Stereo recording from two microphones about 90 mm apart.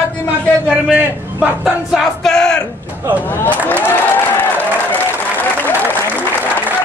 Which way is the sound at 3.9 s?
20° left (ahead or behind).